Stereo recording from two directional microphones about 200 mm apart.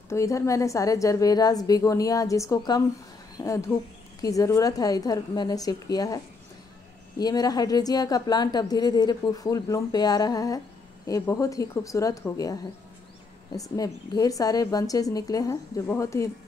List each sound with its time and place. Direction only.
0.1 s a woman's voice: 15° left (ahead or behind)
13.6 s a woman's voice: 15° left (ahead or behind)